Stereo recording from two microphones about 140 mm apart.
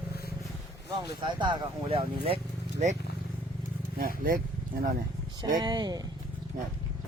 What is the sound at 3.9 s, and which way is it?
Speech, 90° right.